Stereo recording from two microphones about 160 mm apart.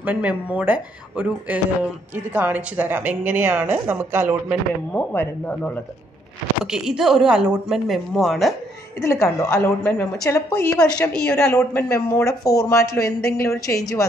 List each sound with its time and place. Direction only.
0.0 s a woman's voice: 10° right (ahead or behind)
4.9 s speech: 15° left (ahead or behind)
6.6 s speech: 5° right (ahead or behind)
9.0 s speech: 20° left (ahead or behind)
10.7 s speech: 5° left (ahead or behind)
11.5 s speech: 15° left (ahead or behind)